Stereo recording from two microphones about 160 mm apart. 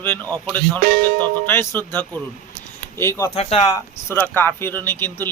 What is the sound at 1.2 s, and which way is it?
Speech, 15° left (ahead or behind).